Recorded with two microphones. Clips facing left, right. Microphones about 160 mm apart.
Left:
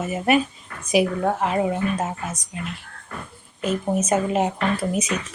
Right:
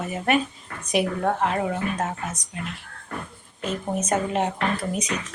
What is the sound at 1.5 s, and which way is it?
Speech, 20° left (ahead or behind).